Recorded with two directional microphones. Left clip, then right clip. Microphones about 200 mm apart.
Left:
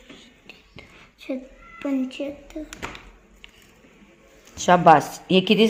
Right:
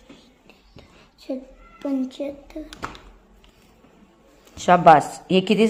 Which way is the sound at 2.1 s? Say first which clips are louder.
Right 1 dB; centre (ahead or behind).